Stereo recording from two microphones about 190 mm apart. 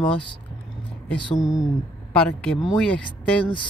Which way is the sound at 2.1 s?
5° left (ahead or behind).